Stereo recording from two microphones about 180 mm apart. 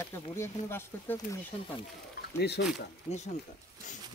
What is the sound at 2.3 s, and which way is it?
Speech, 65° left (ahead or behind).